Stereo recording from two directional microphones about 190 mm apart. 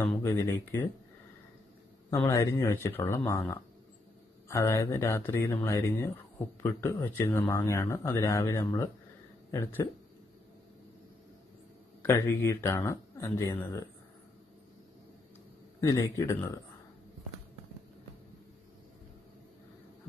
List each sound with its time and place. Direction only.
0.0 s speech: 10° left (ahead or behind)
2.0 s speech: 15° left (ahead or behind)
12.0 s speech: 15° left (ahead or behind)
15.8 s speech: 15° left (ahead or behind)